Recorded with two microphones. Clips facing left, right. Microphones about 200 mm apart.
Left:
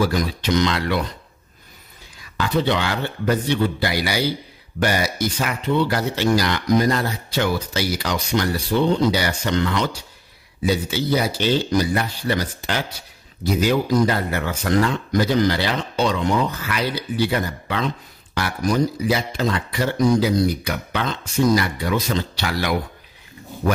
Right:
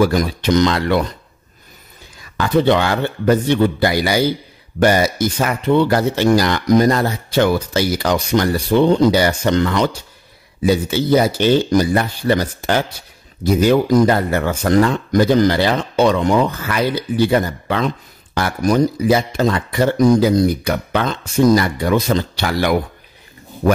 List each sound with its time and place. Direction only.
0.0 s speech: 50° right (ahead or behind)
2.3 s speech: 50° right (ahead or behind)